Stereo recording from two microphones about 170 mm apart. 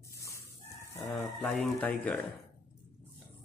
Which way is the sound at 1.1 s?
5° left (ahead or behind).